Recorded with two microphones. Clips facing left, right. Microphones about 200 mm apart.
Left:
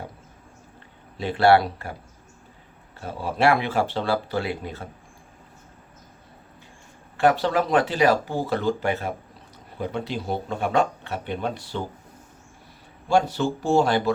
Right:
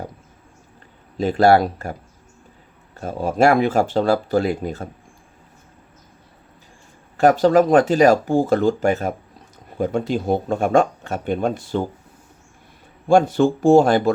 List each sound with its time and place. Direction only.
1.1 s speech: 40° right (ahead or behind)
3.0 s speech: 45° right (ahead or behind)
7.2 s speech: 45° right (ahead or behind)
13.1 s speech: 50° right (ahead or behind)